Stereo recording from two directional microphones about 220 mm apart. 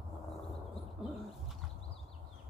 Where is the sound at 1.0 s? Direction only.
Centre (ahead or behind).